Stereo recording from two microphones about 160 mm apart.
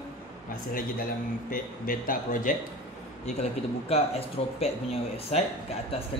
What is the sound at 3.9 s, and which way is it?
Speech, 40° left (ahead or behind).